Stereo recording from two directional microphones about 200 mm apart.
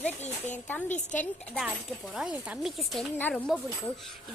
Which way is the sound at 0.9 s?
35° left (ahead or behind).